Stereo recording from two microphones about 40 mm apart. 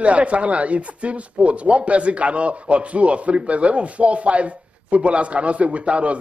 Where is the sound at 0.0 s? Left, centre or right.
Right.